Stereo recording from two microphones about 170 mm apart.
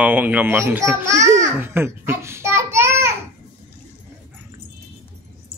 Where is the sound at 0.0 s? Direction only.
10° right (ahead or behind).